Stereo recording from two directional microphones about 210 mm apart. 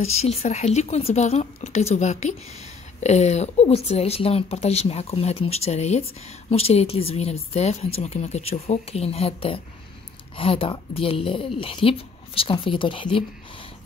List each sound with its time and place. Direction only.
0.0 s a woman's voice: 30° left (ahead or behind)